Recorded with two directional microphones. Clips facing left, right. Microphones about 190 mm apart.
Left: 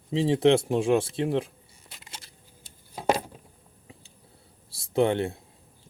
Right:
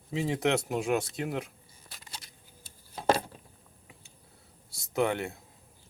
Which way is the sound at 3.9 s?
30° left (ahead or behind).